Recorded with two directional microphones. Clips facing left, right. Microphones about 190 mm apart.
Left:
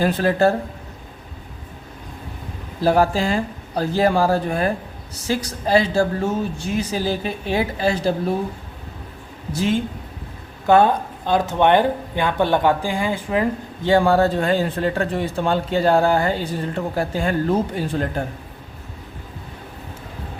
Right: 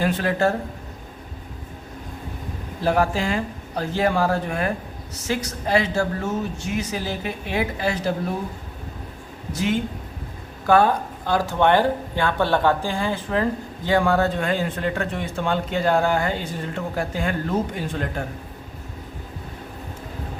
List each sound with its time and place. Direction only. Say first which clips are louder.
0.0 s speech: left 4 dB; 35° left (ahead or behind)
2.8 s speech: left 4 dB; 35° left (ahead or behind)
9.5 s speech: left 2 dB; 30° left (ahead or behind); by 13.5 s 15° left (ahead or behind)
13.8 s speech: left 4 dB; 30° left (ahead or behind)